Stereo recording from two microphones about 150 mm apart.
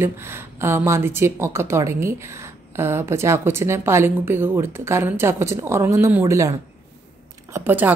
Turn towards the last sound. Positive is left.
turn(degrees=-15)  # may be behind; listen again after turning